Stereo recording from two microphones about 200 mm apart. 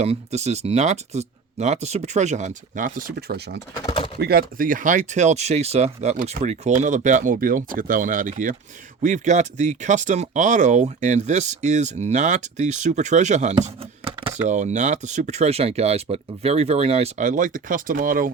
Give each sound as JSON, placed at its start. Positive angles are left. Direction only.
{"t": 0.0, "sound": "speech", "side_deg": -35}
{"t": 3.8, "sound": "chopping", "side_deg": 20}
{"t": 4.2, "sound": "speech", "side_deg": -50}
{"t": 14.4, "sound": "speech", "side_deg": -35}